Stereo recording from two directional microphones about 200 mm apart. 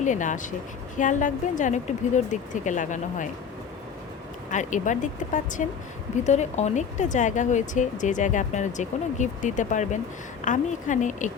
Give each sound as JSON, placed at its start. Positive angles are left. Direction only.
{"t": 0.0, "sound": "speech", "side_deg": 40}
{"t": 4.5, "sound": "a woman's voice", "side_deg": 40}